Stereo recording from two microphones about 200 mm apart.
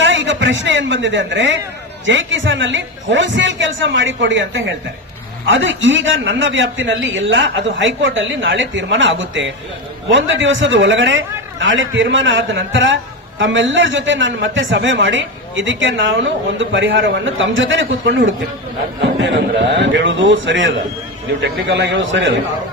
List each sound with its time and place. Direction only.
0.0 s a woman's voice: 70° right (ahead or behind)